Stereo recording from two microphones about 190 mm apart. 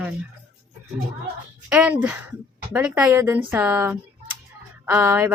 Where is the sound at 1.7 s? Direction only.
10° right (ahead or behind).